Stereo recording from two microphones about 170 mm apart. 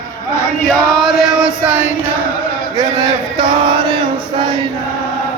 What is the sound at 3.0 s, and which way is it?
Chant, 25° right (ahead or behind).